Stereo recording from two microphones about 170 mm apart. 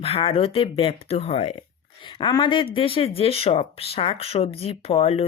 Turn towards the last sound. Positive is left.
turn(degrees=35)  # may be behind; listen again after turning